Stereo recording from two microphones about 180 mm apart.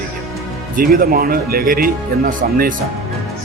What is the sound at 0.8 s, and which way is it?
Speech, 55° right (ahead or behind).